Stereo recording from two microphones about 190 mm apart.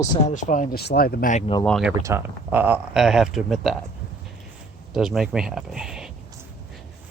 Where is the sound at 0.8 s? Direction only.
55° left (ahead or behind).